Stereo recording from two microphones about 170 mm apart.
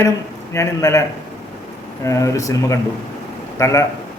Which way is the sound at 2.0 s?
20° left (ahead or behind).